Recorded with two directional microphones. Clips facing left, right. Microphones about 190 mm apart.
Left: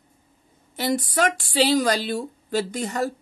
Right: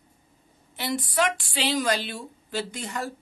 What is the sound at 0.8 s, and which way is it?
A woman's voice, 40° left (ahead or behind).